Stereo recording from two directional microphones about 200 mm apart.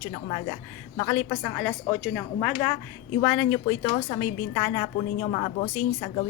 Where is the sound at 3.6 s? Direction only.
25° left (ahead or behind).